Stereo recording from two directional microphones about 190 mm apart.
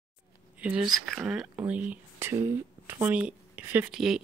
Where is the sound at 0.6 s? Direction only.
5° right (ahead or behind).